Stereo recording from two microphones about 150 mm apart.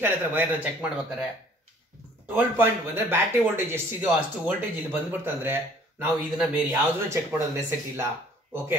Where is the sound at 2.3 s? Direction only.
15° right (ahead or behind).